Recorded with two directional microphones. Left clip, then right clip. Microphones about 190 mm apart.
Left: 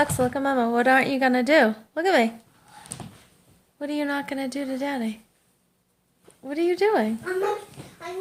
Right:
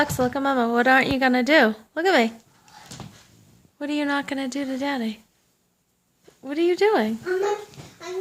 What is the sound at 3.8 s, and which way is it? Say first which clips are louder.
A woman's voice: right 2 dB; 20° right (ahead or behind).